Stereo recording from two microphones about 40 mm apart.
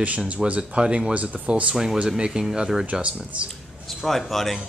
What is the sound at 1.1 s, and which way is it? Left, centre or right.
Speech, right.